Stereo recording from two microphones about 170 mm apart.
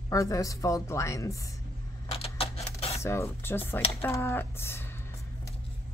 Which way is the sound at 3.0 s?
15° left (ahead or behind).